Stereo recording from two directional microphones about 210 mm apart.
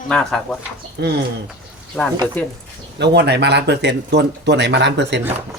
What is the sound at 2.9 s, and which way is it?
Speech, 55° right (ahead or behind).